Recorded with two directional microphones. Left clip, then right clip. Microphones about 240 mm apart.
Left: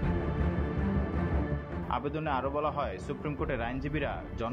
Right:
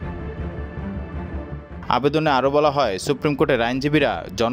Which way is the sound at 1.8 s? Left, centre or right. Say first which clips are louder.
Right 14 dB; right.